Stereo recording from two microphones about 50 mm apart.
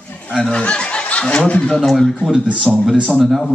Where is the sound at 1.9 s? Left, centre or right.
Centre.